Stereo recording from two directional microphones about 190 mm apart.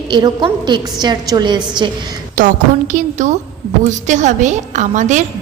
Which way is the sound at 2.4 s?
40° right (ahead or behind).